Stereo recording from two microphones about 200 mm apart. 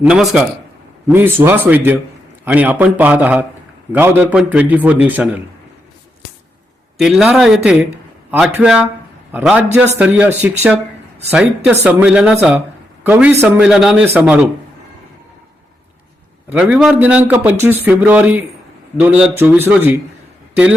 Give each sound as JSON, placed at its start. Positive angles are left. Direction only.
{"t": 0.0, "sound": "speech", "side_deg": -5}
{"t": 7.0, "sound": "speech", "side_deg": 0}
{"t": 9.6, "sound": "a man's voice", "side_deg": -35}
{"t": 10.0, "sound": "speech", "side_deg": -10}
{"t": 11.7, "sound": "speech", "side_deg": -10}
{"t": 16.5, "sound": "speech", "side_deg": -5}